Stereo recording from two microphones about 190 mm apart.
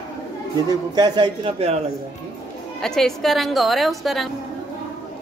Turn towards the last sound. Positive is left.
turn(degrees=0)  # may be behind; listen again after turning